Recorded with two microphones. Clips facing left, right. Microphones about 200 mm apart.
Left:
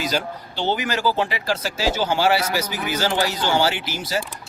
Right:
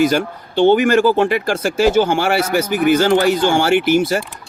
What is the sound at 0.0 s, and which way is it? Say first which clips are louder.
Speech: right 10 dB; 55° right (ahead or behind).